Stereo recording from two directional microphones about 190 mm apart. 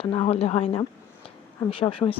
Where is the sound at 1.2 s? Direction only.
30° left (ahead or behind).